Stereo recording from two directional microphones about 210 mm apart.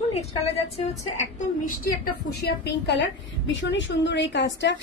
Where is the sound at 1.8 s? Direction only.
50° left (ahead or behind).